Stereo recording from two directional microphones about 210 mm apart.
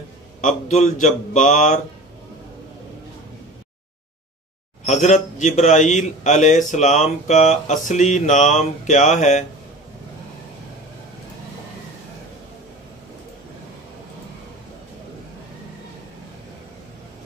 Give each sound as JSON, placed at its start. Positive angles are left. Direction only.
{"t": 0.4, "sound": "a man's voice", "side_deg": 35}
{"t": 4.8, "sound": "a man's voice", "side_deg": 35}